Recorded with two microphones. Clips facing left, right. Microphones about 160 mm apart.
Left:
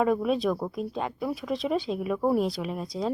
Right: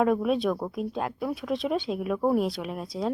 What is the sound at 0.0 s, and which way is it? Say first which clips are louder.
A woman's voice: right 1 dB; centre (ahead or behind).